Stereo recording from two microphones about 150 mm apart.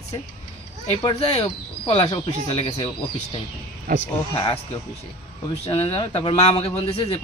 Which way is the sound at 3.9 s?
60° right (ahead or behind).